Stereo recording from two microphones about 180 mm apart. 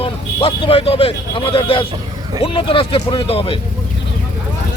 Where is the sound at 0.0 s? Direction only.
30° left (ahead or behind).